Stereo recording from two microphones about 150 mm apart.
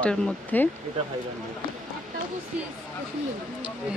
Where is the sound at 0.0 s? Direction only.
10° left (ahead or behind).